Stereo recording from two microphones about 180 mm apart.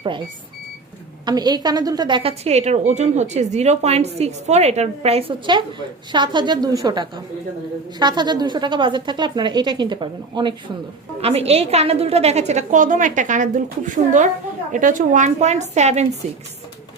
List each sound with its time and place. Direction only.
1.2 s a woman's voice: 25° right (ahead or behind); by 16.0 s 40° right (ahead or behind)